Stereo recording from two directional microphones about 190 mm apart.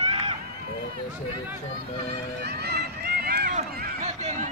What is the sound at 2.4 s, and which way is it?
Run, 60° right (ahead or behind).